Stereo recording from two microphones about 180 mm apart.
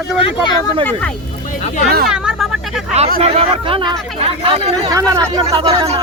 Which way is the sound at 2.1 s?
5° right (ahead or behind).